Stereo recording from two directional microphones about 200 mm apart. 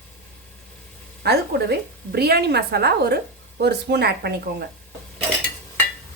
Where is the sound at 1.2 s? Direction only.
55° right (ahead or behind).